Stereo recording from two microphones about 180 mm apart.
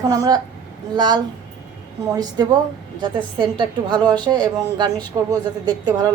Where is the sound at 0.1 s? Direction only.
20° right (ahead or behind).